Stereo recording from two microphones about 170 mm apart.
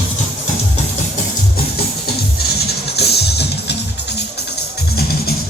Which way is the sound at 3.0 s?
75° left (ahead or behind).